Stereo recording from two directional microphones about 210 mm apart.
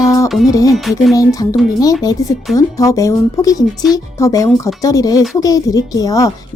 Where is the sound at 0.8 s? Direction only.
Centre (ahead or behind).